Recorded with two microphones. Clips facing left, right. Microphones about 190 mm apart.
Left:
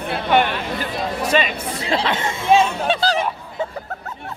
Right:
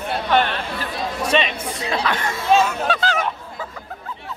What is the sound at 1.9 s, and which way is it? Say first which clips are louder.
Speech: left 2 dB; 25° left (ahead or behind).